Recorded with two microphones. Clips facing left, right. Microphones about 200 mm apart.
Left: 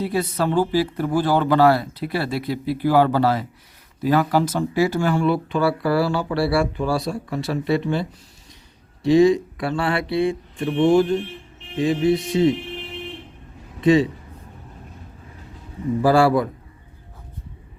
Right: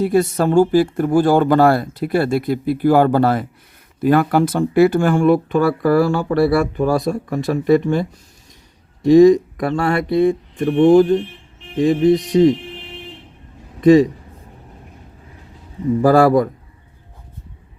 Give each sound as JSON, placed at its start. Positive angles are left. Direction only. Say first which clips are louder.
{"t": 0.0, "sound": "speech", "louder": "right 6 dB", "side_deg": -50}
{"t": 13.8, "sound": "speech", "louder": "right 6 dB", "side_deg": -45}
{"t": 16.0, "sound": "speech", "louder": "right 4 dB", "side_deg": -50}